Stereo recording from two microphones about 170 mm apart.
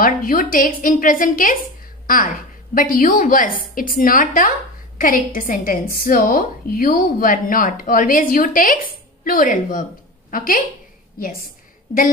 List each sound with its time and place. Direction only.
0.0 s a woman's voice: 55° left (ahead or behind)